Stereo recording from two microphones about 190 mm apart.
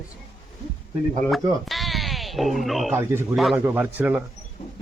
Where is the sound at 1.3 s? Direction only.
Centre (ahead or behind).